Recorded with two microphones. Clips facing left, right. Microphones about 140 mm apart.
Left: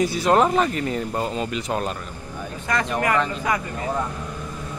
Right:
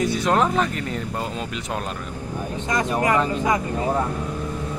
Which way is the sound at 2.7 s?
20° right (ahead or behind).